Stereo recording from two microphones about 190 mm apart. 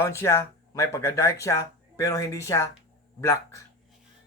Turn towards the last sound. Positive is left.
turn(degrees=15)  # may be behind; listen again after turning